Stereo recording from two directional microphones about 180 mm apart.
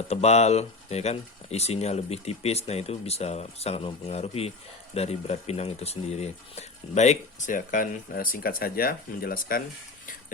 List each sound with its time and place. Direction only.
0.1 s speech: 35° left (ahead or behind); by 9.6 s 55° left (ahead or behind)